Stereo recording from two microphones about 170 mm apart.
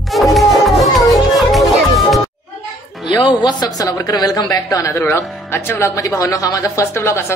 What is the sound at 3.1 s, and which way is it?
A woman's voice, 25° left (ahead or behind).